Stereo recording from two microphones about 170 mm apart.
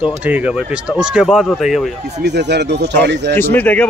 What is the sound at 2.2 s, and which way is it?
Speech, 80° right.